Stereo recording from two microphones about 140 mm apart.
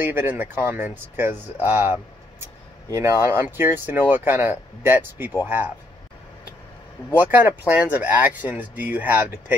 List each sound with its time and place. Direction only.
0.0 s speech: 15° right (ahead or behind)
7.2 s speech: 15° right (ahead or behind)